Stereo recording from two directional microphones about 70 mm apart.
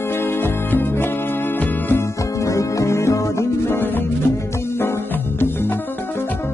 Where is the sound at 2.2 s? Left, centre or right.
Left.